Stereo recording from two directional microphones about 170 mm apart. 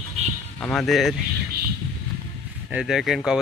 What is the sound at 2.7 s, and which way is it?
Speech, centre (ahead or behind).